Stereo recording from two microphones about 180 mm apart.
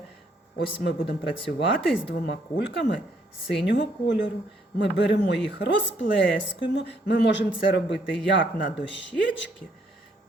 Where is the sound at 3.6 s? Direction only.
85° left.